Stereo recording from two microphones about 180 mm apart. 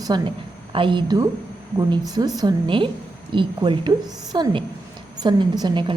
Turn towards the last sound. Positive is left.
turn(degrees=-25)  # may be behind; listen again after turning